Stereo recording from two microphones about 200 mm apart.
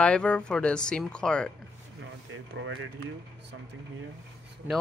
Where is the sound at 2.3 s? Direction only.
70° right (ahead or behind).